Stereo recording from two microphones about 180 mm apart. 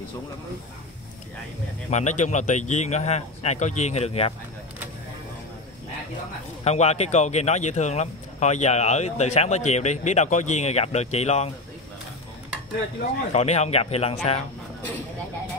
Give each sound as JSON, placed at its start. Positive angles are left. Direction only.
{"t": 1.9, "sound": "speech", "side_deg": 40}
{"t": 6.6, "sound": "speech", "side_deg": 35}
{"t": 13.3, "sound": "speech", "side_deg": 35}